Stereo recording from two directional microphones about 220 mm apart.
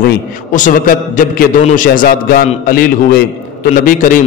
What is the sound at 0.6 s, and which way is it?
A man's voice, 35° left (ahead or behind).